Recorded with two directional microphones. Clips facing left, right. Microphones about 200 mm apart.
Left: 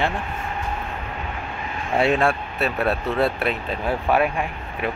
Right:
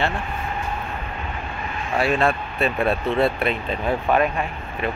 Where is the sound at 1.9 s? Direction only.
25° left (ahead or behind).